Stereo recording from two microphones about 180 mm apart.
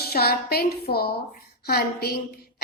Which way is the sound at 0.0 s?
60° left (ahead or behind).